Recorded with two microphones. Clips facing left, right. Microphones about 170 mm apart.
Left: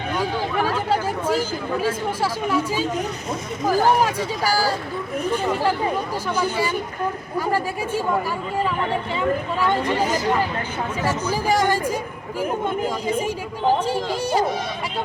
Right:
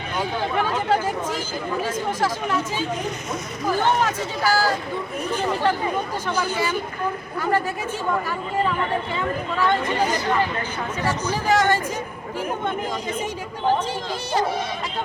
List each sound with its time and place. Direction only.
0.6 s chatter: 35° left (ahead or behind)
2.2 s speech: 10° left (ahead or behind)
3.7 s speech: 35° left (ahead or behind)
3.9 s speech: 10° left (ahead or behind)
6.2 s speech: 10° left (ahead or behind)
11.4 s speech: 10° left (ahead or behind)